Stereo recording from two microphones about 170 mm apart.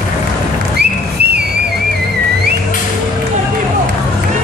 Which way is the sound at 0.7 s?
70° right (ahead or behind).